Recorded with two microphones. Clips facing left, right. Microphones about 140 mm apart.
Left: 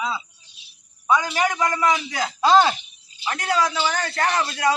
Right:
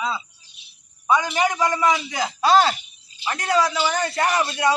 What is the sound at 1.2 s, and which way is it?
Speech, 15° right (ahead or behind).